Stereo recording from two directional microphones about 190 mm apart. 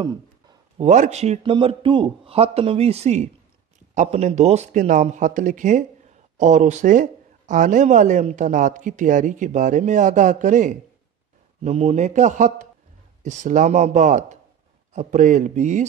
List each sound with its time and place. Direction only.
0.7 s a man's voice: 40° right (ahead or behind)